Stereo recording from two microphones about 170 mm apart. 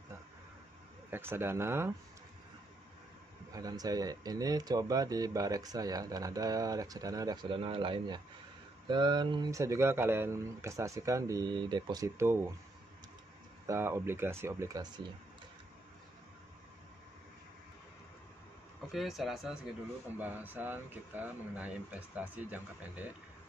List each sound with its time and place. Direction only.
1.1 s speech: 15° right (ahead or behind)
3.5 s speech: 20° right (ahead or behind)
13.7 s speech: 15° right (ahead or behind)
18.9 s speech: centre (ahead or behind)